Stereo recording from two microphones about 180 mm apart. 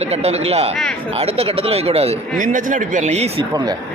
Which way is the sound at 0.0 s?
35° right (ahead or behind).